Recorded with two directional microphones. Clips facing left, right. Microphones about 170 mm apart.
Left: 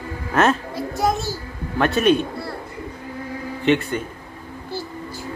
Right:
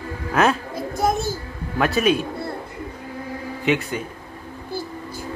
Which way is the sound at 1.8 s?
Centre (ahead or behind).